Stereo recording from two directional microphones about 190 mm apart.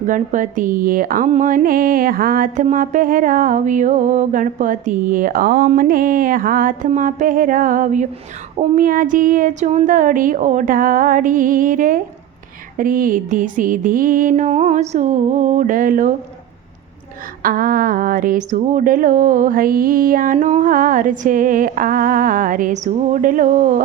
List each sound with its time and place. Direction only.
0.1 s speech: 45° right (ahead or behind)
17.4 s speech: 45° right (ahead or behind)